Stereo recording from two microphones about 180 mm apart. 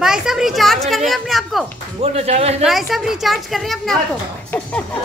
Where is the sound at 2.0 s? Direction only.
35° right (ahead or behind).